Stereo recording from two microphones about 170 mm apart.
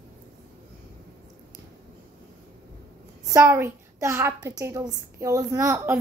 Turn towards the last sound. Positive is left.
turn(degrees=-20)  # may be behind; listen again after turning